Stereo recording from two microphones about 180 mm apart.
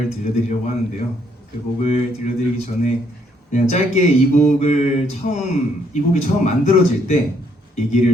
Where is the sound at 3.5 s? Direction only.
40° left (ahead or behind).